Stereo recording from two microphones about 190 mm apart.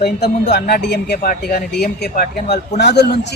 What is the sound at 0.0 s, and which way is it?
Speech, 65° left (ahead or behind).